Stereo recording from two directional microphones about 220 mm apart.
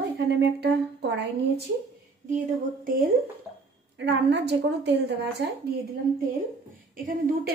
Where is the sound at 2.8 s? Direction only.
40° right (ahead or behind).